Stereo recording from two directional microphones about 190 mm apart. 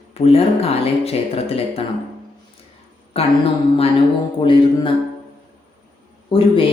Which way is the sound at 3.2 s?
30° left (ahead or behind).